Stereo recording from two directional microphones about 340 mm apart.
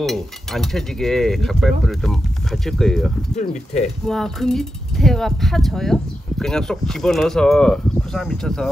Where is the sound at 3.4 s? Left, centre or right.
Centre.